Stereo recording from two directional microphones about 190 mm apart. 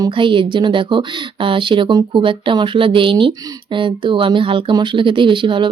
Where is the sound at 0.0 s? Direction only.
25° right (ahead or behind).